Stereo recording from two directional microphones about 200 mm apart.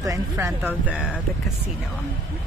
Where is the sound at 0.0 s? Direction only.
15° right (ahead or behind).